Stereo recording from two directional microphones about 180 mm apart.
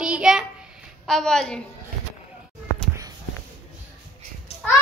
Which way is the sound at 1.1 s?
Centre (ahead or behind).